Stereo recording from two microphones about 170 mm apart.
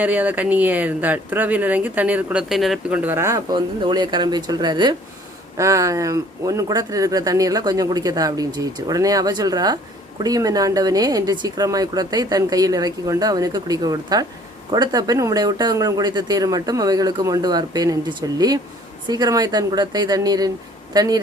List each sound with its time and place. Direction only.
0.0 s speech: 10° right (ahead or behind)
3.0 s speech: 15° right (ahead or behind)
3.5 s speech: 25° right (ahead or behind)